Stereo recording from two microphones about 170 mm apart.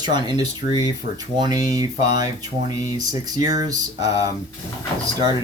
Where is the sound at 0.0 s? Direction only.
25° right (ahead or behind).